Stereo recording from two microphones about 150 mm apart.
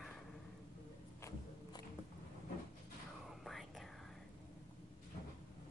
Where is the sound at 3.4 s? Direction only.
Centre (ahead or behind).